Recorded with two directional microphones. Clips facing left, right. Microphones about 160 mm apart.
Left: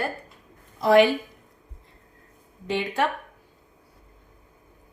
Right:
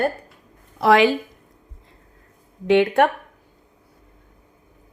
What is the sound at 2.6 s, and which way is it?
Speech, 65° right (ahead or behind).